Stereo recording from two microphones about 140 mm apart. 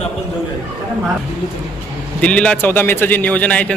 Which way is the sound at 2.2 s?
5° left (ahead or behind).